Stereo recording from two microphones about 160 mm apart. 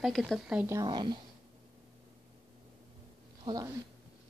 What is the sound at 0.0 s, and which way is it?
Speech, centre (ahead or behind).